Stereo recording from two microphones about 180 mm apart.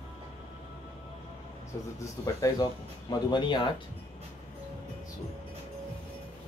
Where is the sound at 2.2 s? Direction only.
20° left (ahead or behind).